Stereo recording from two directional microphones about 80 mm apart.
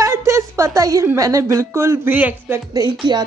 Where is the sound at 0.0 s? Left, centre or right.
Right.